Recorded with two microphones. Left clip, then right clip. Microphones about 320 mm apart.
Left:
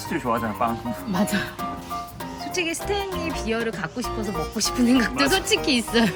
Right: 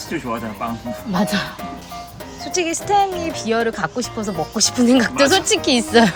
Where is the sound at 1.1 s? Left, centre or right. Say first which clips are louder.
Right 5 dB; right.